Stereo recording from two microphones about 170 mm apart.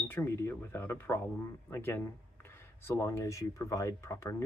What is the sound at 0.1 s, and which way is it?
Speech, 15° left (ahead or behind).